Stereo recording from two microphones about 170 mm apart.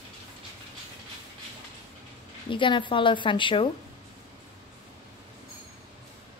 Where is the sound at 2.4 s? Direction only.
30° left (ahead or behind).